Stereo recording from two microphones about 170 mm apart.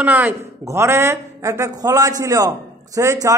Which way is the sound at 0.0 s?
10° right (ahead or behind).